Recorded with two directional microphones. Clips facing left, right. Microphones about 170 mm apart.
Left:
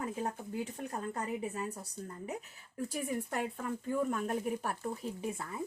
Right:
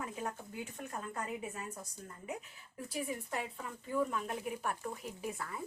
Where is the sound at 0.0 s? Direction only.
35° left (ahead or behind).